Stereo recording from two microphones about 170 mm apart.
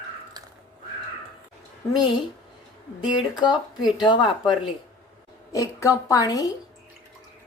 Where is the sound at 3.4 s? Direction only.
25° left (ahead or behind).